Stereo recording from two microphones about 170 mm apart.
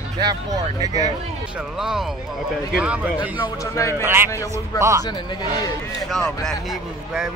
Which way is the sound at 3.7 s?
15° left (ahead or behind).